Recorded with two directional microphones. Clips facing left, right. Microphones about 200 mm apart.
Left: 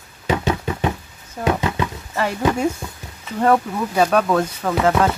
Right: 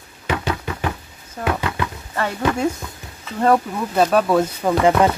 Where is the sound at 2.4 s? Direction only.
20° left (ahead or behind).